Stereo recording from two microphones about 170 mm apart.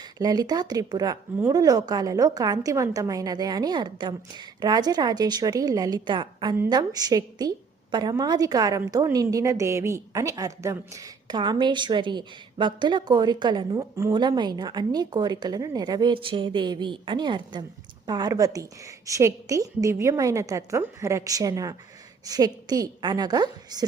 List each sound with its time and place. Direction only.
0.0 s a woman's voice: 20° right (ahead or behind)